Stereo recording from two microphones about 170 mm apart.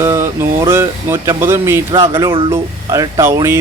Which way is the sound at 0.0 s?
15° right (ahead or behind).